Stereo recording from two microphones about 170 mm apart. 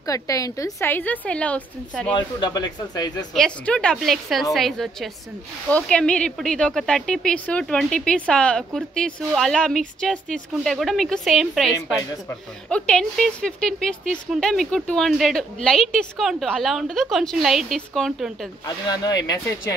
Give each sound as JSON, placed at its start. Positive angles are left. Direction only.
{"t": 0.0, "sound": "a woman's voice", "side_deg": 20}
{"t": 2.1, "sound": "speech", "side_deg": 25}
{"t": 3.3, "sound": "speech", "side_deg": 5}
{"t": 18.9, "sound": "speech", "side_deg": 20}